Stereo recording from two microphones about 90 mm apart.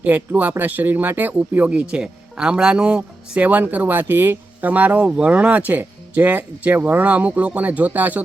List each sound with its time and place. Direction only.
0.3 s speech: 20° right (ahead or behind)